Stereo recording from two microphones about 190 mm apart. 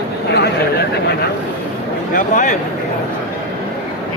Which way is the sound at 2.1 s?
40° left (ahead or behind).